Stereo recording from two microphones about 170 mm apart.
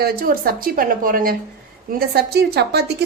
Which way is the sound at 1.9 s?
70° right (ahead or behind).